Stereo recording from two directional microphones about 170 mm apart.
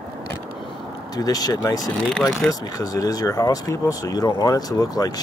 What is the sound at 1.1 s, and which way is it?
Speech, 20° left (ahead or behind).